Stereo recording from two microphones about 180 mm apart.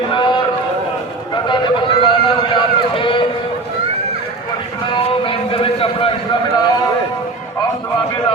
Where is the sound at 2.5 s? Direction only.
30° left (ahead or behind).